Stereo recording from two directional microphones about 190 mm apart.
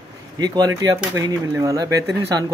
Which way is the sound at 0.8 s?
20° right (ahead or behind).